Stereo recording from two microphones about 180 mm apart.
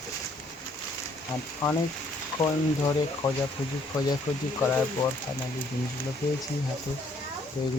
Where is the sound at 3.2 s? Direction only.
15° left (ahead or behind).